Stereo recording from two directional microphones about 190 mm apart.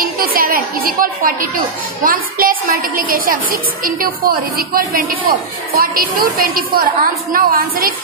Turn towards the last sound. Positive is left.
turn(degrees=-50)  # may be behind; listen again after turning